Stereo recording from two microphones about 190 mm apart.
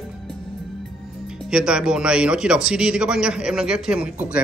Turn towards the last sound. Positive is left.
turn(degrees=-5)  # may be behind; listen again after turning